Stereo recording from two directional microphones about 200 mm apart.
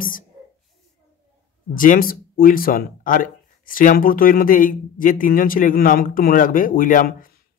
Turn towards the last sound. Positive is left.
turn(degrees=45)  # may be behind; listen again after turning